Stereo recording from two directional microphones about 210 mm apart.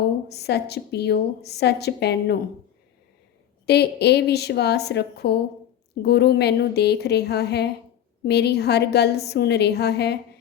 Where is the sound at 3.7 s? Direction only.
50° left (ahead or behind).